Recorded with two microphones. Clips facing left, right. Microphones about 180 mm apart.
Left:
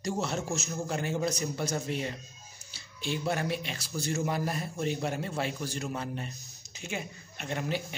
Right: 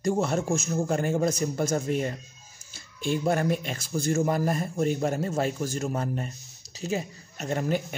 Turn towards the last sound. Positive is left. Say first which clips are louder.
# right 6 dB
turn(degrees=-45)  # may be behind; listen again after turning